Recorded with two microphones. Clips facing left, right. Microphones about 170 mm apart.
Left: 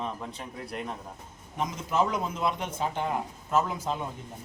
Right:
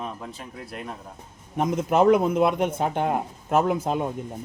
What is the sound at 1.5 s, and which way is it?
A man's voice, 55° right (ahead or behind).